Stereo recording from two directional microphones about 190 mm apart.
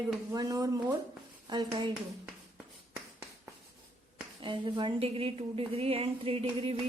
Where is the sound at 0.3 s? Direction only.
20° right (ahead or behind).